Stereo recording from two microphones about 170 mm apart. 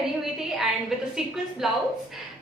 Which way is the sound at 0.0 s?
Centre (ahead or behind).